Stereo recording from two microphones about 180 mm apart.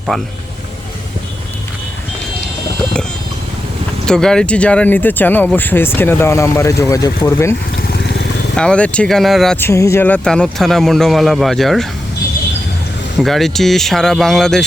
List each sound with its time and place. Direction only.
0.1 s a man's voice: centre (ahead or behind)
4.0 s speech: 5° left (ahead or behind)
7.8 s vehicle: 70° left (ahead or behind)
8.5 s a man's voice: 5° left (ahead or behind)
9.6 s a man's voice: 15° left (ahead or behind)
13.1 s a man's voice: centre (ahead or behind)